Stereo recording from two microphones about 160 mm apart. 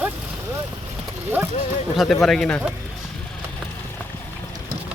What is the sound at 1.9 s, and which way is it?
Speech, centre (ahead or behind).